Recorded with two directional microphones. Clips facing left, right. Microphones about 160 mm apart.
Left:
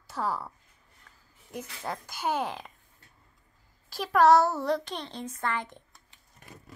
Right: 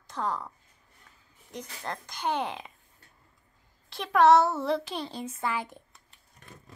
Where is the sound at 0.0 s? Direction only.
5° left (ahead or behind).